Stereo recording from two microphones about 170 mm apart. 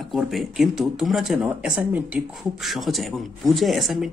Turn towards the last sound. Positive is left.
turn(degrees=0)  # may be behind; listen again after turning